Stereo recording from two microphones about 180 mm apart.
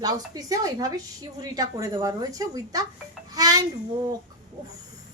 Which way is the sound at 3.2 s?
20° right (ahead or behind).